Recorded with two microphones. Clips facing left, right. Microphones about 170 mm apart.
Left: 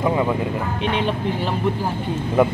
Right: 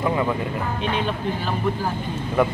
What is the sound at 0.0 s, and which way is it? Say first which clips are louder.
Music: left 2 dB; 15° left (ahead or behind).